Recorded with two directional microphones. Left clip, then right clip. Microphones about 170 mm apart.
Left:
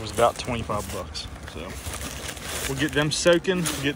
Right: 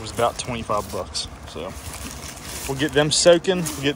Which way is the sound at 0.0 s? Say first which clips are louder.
Left 1 dB; 10° right (ahead or behind).